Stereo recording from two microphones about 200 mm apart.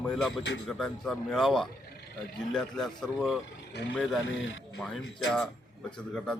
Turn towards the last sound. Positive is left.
turn(degrees=5)  # may be behind; listen again after turning